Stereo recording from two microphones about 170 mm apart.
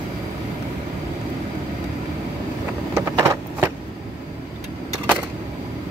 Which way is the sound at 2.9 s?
15° right (ahead or behind).